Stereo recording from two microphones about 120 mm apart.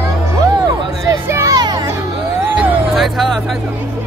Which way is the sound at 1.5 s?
35° right (ahead or behind).